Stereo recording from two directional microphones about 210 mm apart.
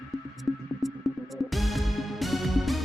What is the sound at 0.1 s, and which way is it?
Music, centre (ahead or behind).